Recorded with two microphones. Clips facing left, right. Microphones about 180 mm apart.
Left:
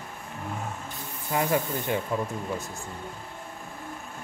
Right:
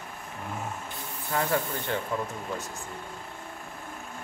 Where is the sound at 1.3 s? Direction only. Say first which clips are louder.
Left 2 dB; 15° left (ahead or behind).